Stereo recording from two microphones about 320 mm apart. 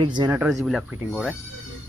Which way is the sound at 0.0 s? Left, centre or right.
Centre.